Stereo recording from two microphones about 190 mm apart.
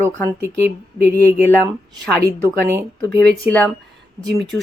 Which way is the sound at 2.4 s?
15° right (ahead or behind).